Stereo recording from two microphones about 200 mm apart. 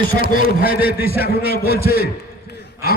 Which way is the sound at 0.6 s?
50° left (ahead or behind).